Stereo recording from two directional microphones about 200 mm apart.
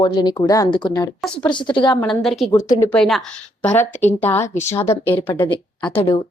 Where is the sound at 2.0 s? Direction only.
Centre (ahead or behind).